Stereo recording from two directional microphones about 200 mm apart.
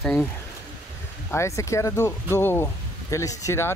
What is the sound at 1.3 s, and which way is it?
Speech, 15° left (ahead or behind).